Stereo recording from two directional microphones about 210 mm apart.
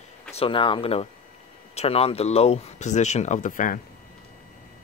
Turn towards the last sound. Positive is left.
turn(degrees=40)  # may be behind; listen again after turning